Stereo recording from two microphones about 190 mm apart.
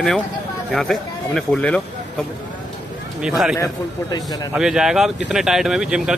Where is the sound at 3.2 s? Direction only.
5° right (ahead or behind).